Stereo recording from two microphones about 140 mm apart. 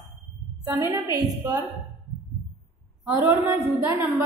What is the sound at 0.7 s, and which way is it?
Speech, 20° right (ahead or behind).